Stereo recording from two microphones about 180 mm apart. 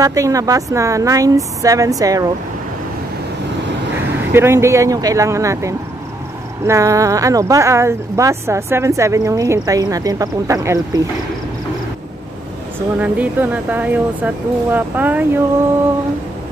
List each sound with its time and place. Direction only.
0.0 s a woman's voice: 20° right (ahead or behind)
4.3 s speech: 15° right (ahead or behind)
13.0 s speech: 10° right (ahead or behind)